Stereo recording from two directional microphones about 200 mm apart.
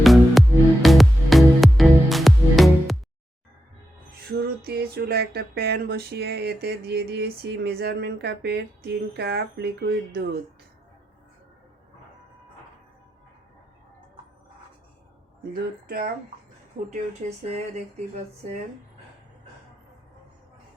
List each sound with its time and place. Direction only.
0.0 s music: centre (ahead or behind)
4.3 s speech: 50° right (ahead or behind)
15.5 s speech: 50° right (ahead or behind)
16.9 s speech: 30° right (ahead or behind)